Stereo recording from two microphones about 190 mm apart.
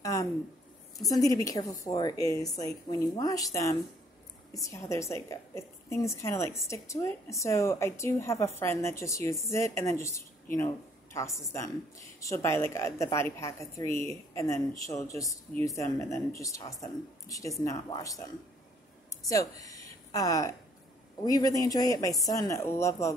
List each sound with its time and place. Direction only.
0.0 s a sound: 15° left (ahead or behind)
0.9 s a woman's voice: 20° left (ahead or behind)
12.2 s a woman's voice: 15° left (ahead or behind)
19.2 s a woman's voice: 20° left (ahead or behind)